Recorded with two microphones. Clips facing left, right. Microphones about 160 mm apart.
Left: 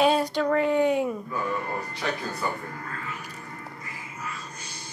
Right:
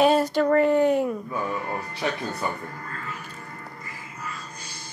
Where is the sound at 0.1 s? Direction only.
5° right (ahead or behind).